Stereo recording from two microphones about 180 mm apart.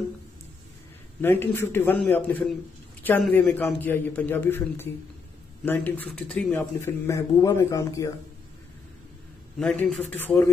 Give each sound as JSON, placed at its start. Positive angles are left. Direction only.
{"t": 1.2, "sound": "a man's voice", "side_deg": 10}
{"t": 6.8, "sound": "a man's voice", "side_deg": 15}
{"t": 9.6, "sound": "a man's voice", "side_deg": 5}